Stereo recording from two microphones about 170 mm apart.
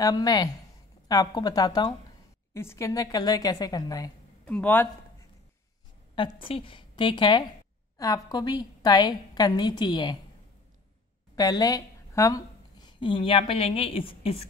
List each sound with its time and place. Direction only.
0.0 s a woman's voice: 20° left (ahead or behind)
4.5 s a man's voice: 10° left (ahead or behind)
6.1 s a woman's voice: 30° left (ahead or behind)
11.3 s a woman's voice: 20° left (ahead or behind)